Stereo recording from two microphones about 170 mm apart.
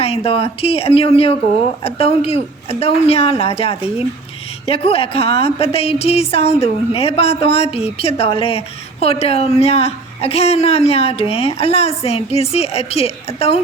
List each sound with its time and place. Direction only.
0.0 s a woman's voice: 35° left (ahead or behind)